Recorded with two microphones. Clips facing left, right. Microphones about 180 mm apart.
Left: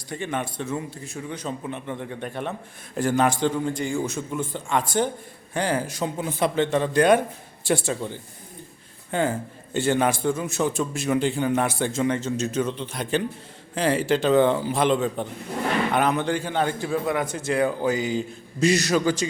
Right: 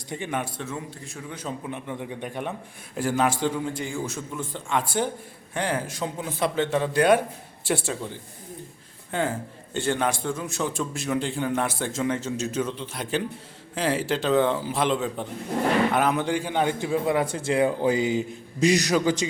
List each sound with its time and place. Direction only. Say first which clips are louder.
0.1 s a man's voice: left 1 dB; 15° right (ahead or behind)
9.1 s a man's voice: left 3 dB; centre (ahead or behind); by 19.3 s 20° right (ahead or behind)